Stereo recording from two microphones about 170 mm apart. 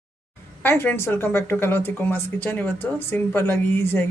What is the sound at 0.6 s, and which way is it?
A woman's voice, 10° left (ahead or behind).